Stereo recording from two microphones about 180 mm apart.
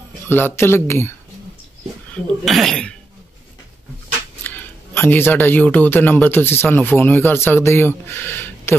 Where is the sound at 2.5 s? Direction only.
Centre (ahead or behind).